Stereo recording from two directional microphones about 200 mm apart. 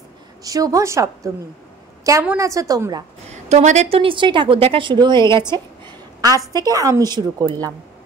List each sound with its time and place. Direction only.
0.4 s a woman's voice: 15° right (ahead or behind)
3.4 s a woman's voice: 35° right (ahead or behind); by 7.7 s 20° right (ahead or behind)